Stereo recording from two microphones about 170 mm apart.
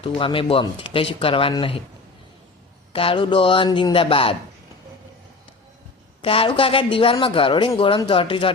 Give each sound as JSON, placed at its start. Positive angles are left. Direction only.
{"t": 0.0, "sound": "speech", "side_deg": 30}
{"t": 2.9, "sound": "speech", "side_deg": 35}
{"t": 6.2, "sound": "speech", "side_deg": 30}